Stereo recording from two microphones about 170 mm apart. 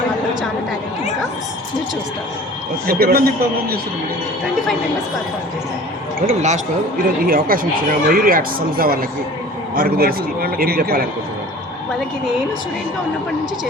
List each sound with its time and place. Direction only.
2.8 s speech: 60° right (ahead or behind)
6.2 s speech: 45° right (ahead or behind)
7.3 s speech: 55° right (ahead or behind)